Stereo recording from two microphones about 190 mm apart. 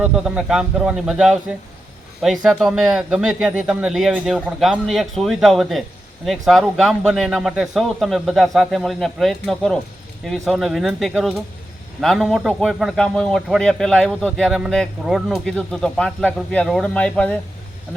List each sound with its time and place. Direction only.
0.0 s a man's voice: 5° right (ahead or behind)